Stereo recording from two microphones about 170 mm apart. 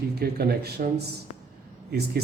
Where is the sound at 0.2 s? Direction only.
70° right (ahead or behind).